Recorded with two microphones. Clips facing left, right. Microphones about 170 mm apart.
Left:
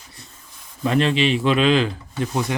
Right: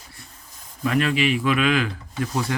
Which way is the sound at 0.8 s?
25° left (ahead or behind).